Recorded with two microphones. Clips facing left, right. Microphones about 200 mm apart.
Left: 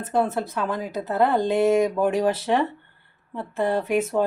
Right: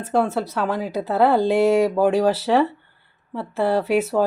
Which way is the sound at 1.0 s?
80° right.